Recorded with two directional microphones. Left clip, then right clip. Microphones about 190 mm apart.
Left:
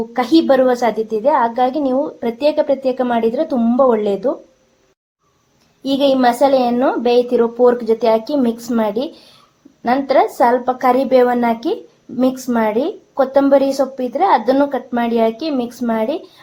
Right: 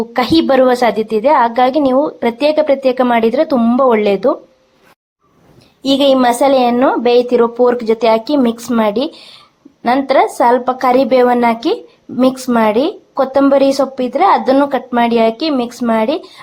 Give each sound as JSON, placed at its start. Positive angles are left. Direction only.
{"t": 0.1, "sound": "a woman's voice", "side_deg": -15}
{"t": 5.8, "sound": "a woman's voice", "side_deg": -20}